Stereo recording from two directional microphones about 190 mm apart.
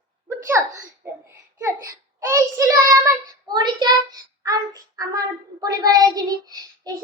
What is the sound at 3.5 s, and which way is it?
A child's voice, 20° right (ahead or behind).